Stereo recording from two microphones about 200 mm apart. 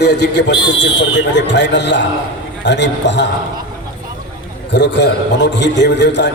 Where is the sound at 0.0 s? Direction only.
60° left (ahead or behind).